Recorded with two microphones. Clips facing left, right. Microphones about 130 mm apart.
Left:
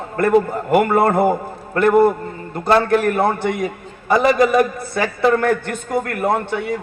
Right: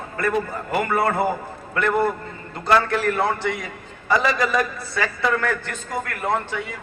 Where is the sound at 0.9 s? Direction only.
50° left (ahead or behind).